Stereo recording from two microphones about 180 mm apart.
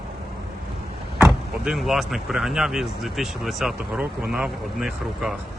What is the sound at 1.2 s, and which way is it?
Speech, centre (ahead or behind).